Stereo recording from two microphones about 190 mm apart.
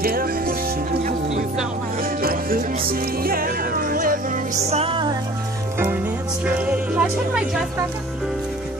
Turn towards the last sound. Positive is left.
turn(degrees=-5)  # may be behind; listen again after turning